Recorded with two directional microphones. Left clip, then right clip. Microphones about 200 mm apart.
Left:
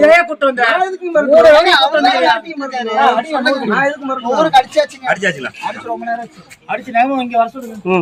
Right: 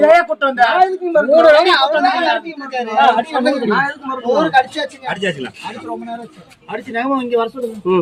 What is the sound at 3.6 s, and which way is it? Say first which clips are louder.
Speech: left 2 dB; 30° left (ahead or behind).